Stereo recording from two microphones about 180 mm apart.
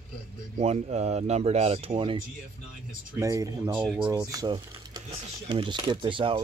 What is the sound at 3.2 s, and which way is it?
Speech, 20° right (ahead or behind).